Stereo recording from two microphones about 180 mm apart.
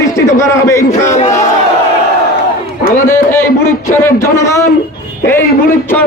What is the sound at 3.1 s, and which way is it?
A man's voice, 15° left (ahead or behind).